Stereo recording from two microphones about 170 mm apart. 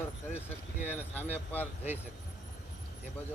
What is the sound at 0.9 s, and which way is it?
Speech, 10° left (ahead or behind).